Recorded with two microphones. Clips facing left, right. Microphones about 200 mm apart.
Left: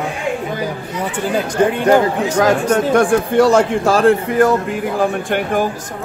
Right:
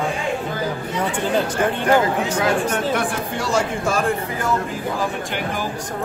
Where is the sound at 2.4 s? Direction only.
45° left (ahead or behind); by 4.4 s 70° left (ahead or behind).